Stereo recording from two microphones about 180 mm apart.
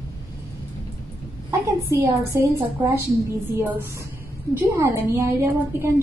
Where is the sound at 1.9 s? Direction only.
15° right (ahead or behind).